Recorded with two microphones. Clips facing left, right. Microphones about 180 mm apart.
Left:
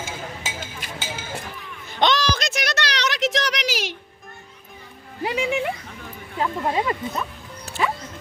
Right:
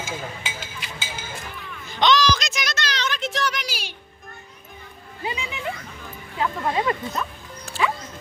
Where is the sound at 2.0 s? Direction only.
55° left (ahead or behind); by 3.9 s 90° left.